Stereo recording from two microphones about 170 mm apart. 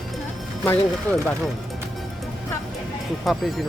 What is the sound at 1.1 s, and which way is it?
Speech, 15° left (ahead or behind).